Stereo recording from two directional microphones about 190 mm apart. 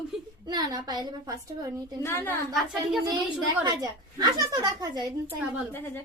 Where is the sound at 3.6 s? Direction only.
20° right (ahead or behind).